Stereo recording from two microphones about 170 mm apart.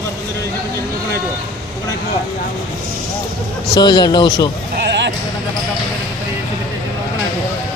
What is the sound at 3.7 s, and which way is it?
Speech, 25° left (ahead or behind).